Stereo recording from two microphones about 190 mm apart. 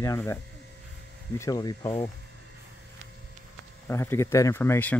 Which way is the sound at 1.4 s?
20° left (ahead or behind).